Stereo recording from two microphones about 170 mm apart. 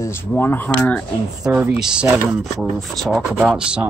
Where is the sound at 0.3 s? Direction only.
10° left (ahead or behind).